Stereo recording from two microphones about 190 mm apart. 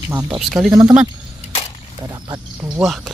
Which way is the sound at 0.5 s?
5° right (ahead or behind).